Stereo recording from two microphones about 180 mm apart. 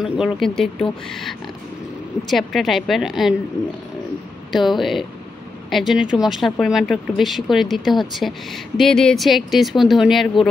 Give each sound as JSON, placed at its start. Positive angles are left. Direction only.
{"t": 0.0, "sound": "a woman's voice", "side_deg": 0}
{"t": 4.5, "sound": "a woman's voice", "side_deg": 0}